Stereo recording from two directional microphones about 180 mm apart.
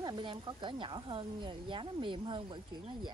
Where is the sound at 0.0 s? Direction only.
25° right (ahead or behind).